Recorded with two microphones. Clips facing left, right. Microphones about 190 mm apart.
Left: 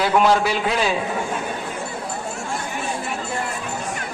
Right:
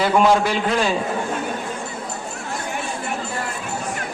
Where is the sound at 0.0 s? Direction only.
Centre (ahead or behind).